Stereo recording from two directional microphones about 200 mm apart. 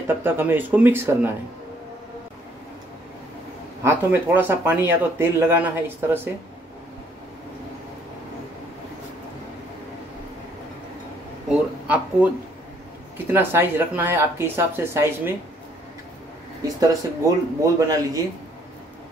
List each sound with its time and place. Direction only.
0.1 s speech: 10° right (ahead or behind)
3.8 s speech: 10° right (ahead or behind)
11.4 s a sound: 5° right (ahead or behind)
13.3 s speech: 10° right (ahead or behind)
16.6 s speech: 15° right (ahead or behind)